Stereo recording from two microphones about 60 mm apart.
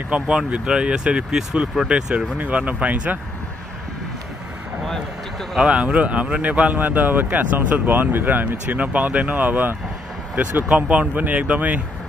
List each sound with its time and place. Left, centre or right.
0.5 s speech: centre
2.3 s speech: right
4.8 s speech: centre
5.6 s speech: centre